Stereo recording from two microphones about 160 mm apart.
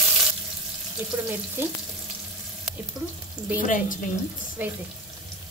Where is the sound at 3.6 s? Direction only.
55° left (ahead or behind).